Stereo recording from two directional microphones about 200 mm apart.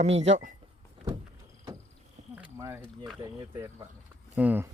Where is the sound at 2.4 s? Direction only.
10° right (ahead or behind).